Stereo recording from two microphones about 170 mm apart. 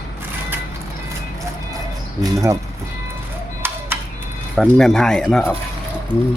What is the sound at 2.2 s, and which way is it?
Speech, 20° right (ahead or behind).